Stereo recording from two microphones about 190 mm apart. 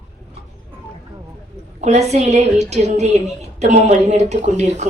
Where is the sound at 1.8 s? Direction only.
35° right (ahead or behind).